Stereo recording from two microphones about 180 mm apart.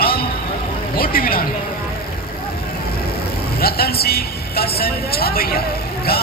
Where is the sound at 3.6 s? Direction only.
60° left (ahead or behind).